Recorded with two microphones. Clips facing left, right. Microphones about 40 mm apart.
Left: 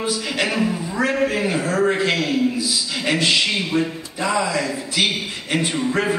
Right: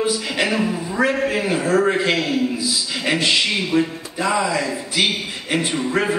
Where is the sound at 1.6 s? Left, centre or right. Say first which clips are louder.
Right 2 dB; centre.